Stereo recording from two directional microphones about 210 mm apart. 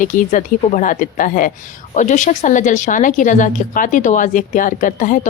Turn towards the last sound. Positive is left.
turn(degrees=40)  # may be behind; listen again after turning